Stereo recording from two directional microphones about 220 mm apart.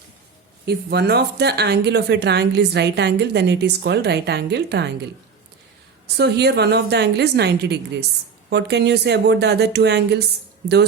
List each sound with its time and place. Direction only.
0.6 s a woman's voice: 50° right (ahead or behind)
6.1 s a woman's voice: 50° right (ahead or behind)